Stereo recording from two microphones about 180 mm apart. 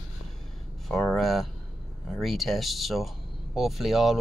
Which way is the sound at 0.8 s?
Centre (ahead or behind).